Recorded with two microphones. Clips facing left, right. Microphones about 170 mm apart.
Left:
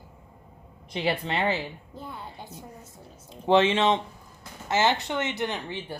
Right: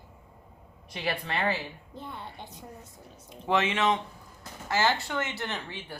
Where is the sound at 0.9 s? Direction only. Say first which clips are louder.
Left 5 dB; 25° left (ahead or behind).